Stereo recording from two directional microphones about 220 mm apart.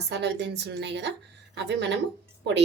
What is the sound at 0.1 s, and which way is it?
Speech, 50° right (ahead or behind).